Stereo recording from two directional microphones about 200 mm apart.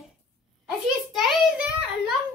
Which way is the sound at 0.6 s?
5° right (ahead or behind).